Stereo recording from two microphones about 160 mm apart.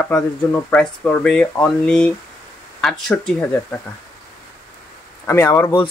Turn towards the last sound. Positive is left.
turn(degrees=15)  # may be behind; listen again after turning